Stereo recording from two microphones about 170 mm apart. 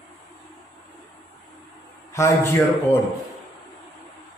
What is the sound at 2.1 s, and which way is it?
Speech, 15° left (ahead or behind).